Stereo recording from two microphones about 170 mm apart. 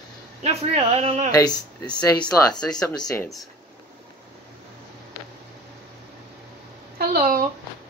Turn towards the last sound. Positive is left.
turn(degrees=-60)  # may be behind; listen again after turning